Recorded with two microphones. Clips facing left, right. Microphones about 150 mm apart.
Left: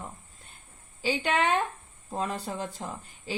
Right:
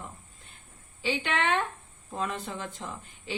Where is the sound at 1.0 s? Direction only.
40° left (ahead or behind).